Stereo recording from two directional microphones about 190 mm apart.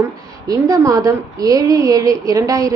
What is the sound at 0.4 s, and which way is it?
A woman's voice, 20° right (ahead or behind).